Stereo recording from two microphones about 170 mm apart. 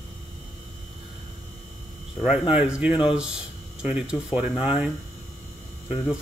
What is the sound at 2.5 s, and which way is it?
Speech, 5° right (ahead or behind).